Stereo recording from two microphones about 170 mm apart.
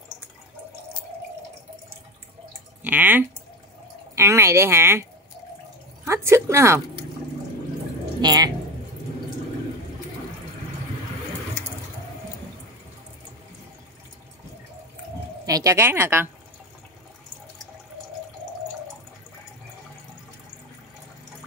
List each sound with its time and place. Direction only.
2.8 s speech: 10° right (ahead or behind)
6.0 s speech: 15° right (ahead or behind)
8.2 s speech: 25° right (ahead or behind)
15.4 s speech: 20° right (ahead or behind)